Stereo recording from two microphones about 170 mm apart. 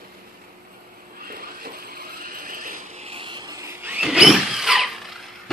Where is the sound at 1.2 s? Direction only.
60° right (ahead or behind).